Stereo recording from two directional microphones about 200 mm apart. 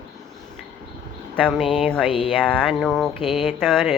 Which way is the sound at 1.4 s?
5° left (ahead or behind).